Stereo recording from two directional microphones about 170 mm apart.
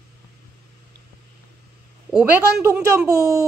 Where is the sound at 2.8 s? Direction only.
15° right (ahead or behind).